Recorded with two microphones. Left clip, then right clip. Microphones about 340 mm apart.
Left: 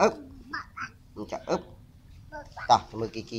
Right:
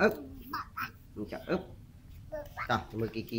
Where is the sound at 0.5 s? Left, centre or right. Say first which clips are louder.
Left 1 dB; centre.